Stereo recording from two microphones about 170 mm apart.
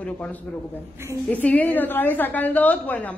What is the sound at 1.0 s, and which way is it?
Speech, 15° right (ahead or behind).